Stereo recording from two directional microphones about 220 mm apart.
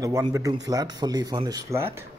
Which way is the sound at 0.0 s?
15° right (ahead or behind).